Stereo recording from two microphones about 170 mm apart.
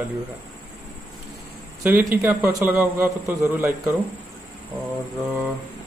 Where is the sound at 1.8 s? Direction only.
15° right (ahead or behind).